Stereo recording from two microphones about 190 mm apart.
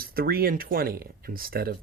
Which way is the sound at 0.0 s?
50° right (ahead or behind).